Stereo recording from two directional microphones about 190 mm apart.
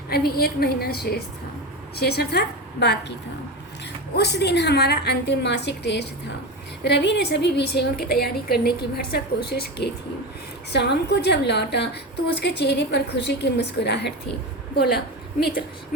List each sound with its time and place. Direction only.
0.1 s a woman's voice: 55° left (ahead or behind)
4.1 s a woman's voice: 60° left (ahead or behind)